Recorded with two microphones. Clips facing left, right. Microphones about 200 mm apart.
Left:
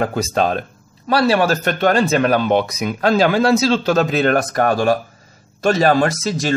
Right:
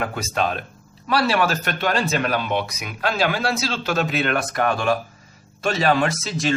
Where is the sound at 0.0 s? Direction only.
35° left (ahead or behind).